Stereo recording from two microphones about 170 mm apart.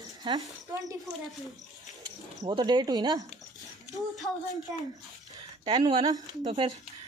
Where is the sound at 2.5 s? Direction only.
25° right (ahead or behind).